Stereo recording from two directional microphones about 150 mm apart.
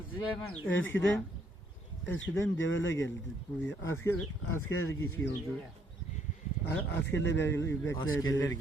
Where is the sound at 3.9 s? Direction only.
15° left (ahead or behind).